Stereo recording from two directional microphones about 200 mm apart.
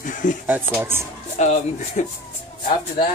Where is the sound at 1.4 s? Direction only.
35° left (ahead or behind).